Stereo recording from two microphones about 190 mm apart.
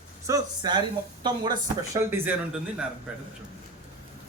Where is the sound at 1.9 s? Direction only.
10° right (ahead or behind).